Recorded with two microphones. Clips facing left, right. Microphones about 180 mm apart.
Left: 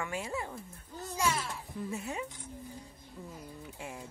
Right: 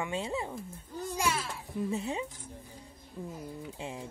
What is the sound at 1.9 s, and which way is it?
Speech, 30° right (ahead or behind).